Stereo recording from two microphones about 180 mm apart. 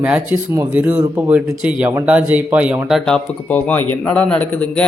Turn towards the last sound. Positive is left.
turn(degrees=5)  # may be behind; listen again after turning